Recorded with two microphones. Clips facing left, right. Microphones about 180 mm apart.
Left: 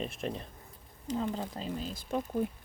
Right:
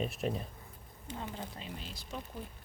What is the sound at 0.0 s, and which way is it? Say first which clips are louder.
Speech: right 1 dB; centre (ahead or behind).